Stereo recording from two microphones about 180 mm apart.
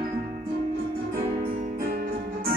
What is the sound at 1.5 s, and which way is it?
Music, 50° right (ahead or behind).